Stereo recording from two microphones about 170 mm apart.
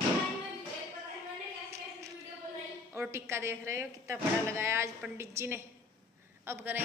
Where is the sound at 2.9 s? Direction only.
15° right (ahead or behind).